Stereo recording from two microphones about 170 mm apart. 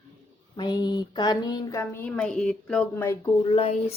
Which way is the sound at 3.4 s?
35° left (ahead or behind).